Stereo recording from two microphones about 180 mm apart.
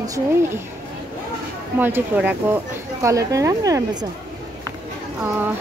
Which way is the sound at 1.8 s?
10° right (ahead or behind).